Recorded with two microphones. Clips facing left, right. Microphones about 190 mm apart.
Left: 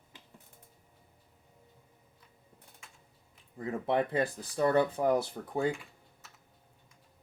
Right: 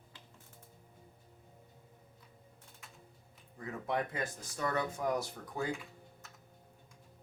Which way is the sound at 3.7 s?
30° left (ahead or behind).